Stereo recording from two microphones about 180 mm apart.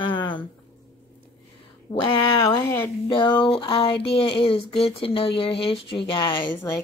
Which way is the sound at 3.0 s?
25° left (ahead or behind).